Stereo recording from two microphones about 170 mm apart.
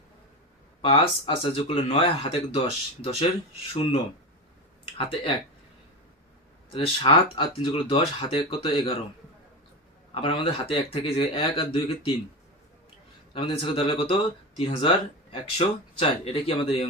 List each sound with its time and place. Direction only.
0.8 s speech: 30° left (ahead or behind)
6.7 s speech: 30° left (ahead or behind)
10.2 s speech: 30° left (ahead or behind)
13.3 s speech: 35° left (ahead or behind)